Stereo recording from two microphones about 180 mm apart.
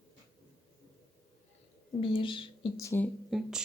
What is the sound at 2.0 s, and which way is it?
Speech, 30° left (ahead or behind).